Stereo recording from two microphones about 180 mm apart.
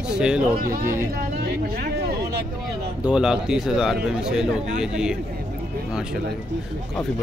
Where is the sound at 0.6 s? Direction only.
55° right (ahead or behind).